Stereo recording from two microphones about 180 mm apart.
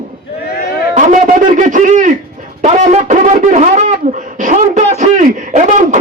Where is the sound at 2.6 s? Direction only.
35° right (ahead or behind).